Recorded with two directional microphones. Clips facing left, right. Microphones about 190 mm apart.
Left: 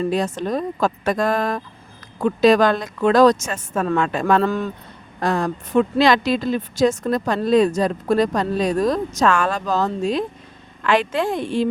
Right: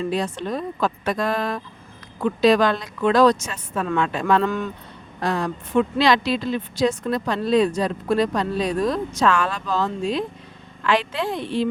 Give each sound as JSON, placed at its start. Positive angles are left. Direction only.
{"t": 0.0, "sound": "speech", "side_deg": 45}
{"t": 5.2, "sound": "speech", "side_deg": 45}